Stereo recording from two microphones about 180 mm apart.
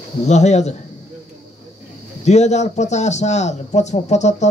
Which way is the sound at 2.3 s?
40° left (ahead or behind).